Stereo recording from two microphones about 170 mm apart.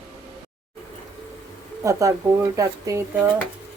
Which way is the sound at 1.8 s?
20° right (ahead or behind).